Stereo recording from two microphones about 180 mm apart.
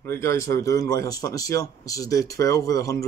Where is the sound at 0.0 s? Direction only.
15° left (ahead or behind).